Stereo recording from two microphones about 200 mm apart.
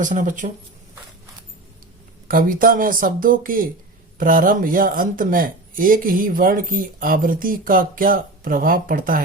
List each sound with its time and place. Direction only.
0.0 s speech: 40° right (ahead or behind)
2.2 s speech: 45° right (ahead or behind)